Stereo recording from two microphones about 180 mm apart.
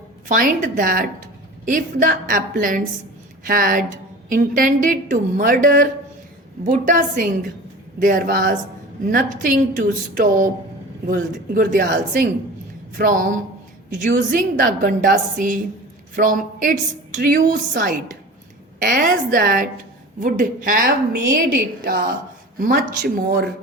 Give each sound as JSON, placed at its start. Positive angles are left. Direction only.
{"t": 0.3, "sound": "a woman's voice", "side_deg": -50}